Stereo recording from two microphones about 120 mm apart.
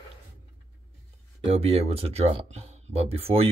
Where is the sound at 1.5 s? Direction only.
55° right (ahead or behind).